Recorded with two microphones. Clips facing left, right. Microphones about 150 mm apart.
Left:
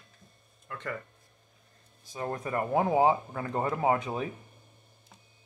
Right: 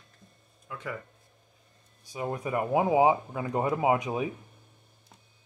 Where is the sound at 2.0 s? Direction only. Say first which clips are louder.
Right 2 dB; 10° right (ahead or behind).